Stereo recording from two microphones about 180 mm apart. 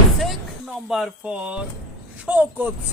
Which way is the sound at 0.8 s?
Centre (ahead or behind).